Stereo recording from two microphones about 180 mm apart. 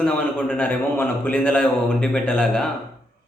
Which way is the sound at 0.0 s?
5° left (ahead or behind).